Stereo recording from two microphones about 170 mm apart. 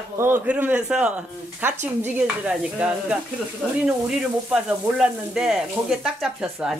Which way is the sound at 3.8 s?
5° right (ahead or behind).